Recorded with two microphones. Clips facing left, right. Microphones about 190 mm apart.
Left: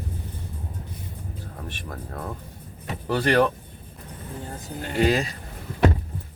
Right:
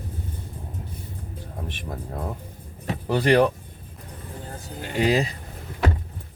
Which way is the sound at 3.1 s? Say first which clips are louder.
Right 2 dB; 15° right (ahead or behind).